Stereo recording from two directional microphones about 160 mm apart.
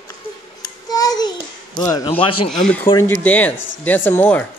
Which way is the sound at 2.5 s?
5° left (ahead or behind).